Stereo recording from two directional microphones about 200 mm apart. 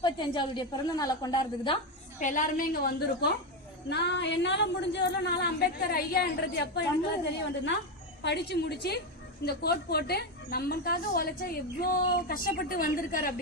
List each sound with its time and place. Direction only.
0.0 s a woman's voice: 20° left (ahead or behind)
2.1 s a woman's voice: 40° left (ahead or behind); by 6.8 s 55° left (ahead or behind)
8.2 s a woman's voice: 55° left (ahead or behind)